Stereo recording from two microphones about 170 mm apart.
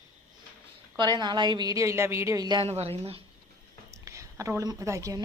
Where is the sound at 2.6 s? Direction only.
35° right (ahead or behind).